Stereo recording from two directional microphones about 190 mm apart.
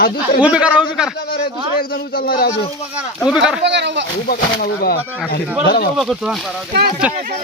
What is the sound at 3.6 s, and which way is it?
Speech, 65° right (ahead or behind).